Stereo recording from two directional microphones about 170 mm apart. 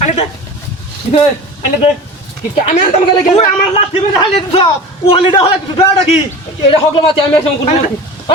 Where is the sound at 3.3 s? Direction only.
35° left (ahead or behind).